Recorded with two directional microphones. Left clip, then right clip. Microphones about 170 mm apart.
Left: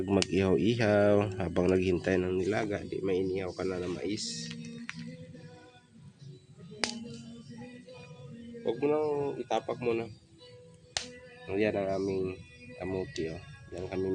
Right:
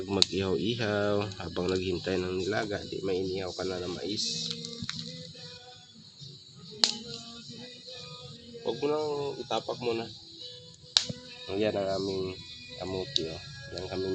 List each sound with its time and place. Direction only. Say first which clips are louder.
0.3 s speech: left 2 dB; 35° left (ahead or behind)
8.6 s speech: left 1 dB; 25° left (ahead or behind)
11.4 s speech: right 1 dB; 15° left (ahead or behind)